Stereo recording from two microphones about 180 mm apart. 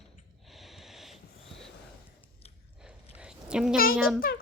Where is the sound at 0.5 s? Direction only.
Centre (ahead or behind).